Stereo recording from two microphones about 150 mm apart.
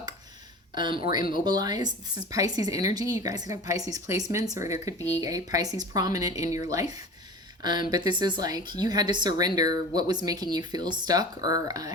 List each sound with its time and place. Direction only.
0.8 s speech: 30° right (ahead or behind)